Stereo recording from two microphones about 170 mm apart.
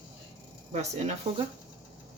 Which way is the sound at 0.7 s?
40° right (ahead or behind).